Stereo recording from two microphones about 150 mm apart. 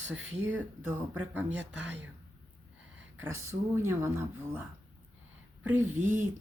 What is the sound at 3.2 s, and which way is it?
Speech, 20° right (ahead or behind).